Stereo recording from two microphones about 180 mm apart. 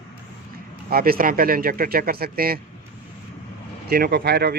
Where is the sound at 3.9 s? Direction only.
60° right (ahead or behind).